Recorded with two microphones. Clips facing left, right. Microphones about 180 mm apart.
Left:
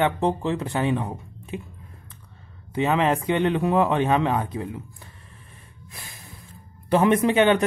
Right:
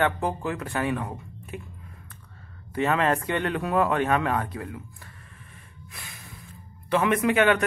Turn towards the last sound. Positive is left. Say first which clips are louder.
# left 3 dB
turn(degrees=25)  # may be behind; listen again after turning